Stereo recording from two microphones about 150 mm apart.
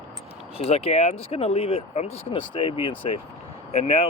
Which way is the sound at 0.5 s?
40° left (ahead or behind).